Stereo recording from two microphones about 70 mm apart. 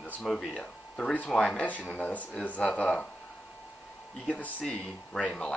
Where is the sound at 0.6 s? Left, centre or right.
Centre.